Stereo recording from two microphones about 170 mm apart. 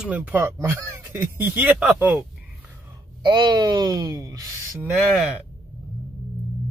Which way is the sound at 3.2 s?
25° right (ahead or behind).